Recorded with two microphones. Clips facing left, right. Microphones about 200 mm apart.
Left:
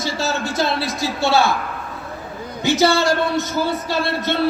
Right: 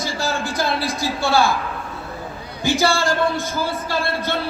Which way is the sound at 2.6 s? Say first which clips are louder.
Left 3 dB; 20° left (ahead or behind).